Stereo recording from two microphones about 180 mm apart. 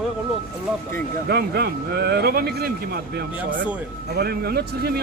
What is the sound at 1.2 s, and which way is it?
Speech, 65° right (ahead or behind).